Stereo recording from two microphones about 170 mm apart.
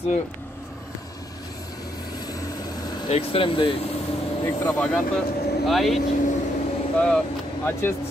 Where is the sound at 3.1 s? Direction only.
35° left (ahead or behind).